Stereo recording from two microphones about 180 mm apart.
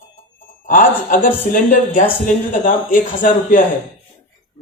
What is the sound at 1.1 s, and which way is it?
A man's voice, 50° left (ahead or behind).